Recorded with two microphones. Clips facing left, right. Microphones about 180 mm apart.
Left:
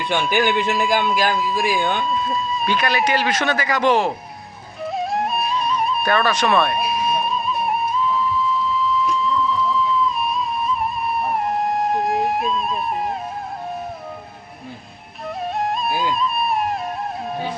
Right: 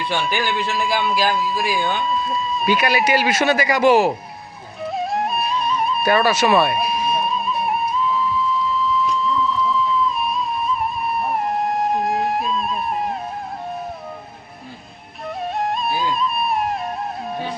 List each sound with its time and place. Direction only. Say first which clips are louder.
0.1 s speech: left 5 dB; 15° left (ahead or behind)
0.8 s a man's voice: left 1 dB; centre (ahead or behind)
4.8 s music: even; centre (ahead or behind)
15.5 s music: even; centre (ahead or behind)